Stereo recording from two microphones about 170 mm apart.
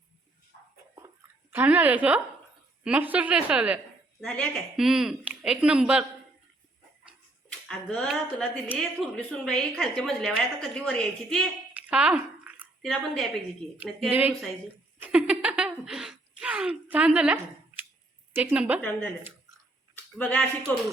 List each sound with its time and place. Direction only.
1.5 s a woman's voice: 10° right (ahead or behind)
4.2 s a woman's voice: 5° left (ahead or behind)
7.5 s a sound: 5° left (ahead or behind)
8.0 s a woman's voice: 5° left (ahead or behind)
11.7 s a sound: 5° right (ahead or behind)
14.1 s a woman's voice: 10° right (ahead or behind)
15.0 s a sound: 5° right (ahead or behind)
18.3 s a woman's voice: 10° right (ahead or behind)
18.8 s speech: 10° left (ahead or behind)
20.1 s speech: 10° left (ahead or behind)